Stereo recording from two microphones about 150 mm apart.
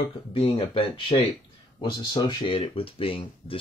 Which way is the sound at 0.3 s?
40° left (ahead or behind).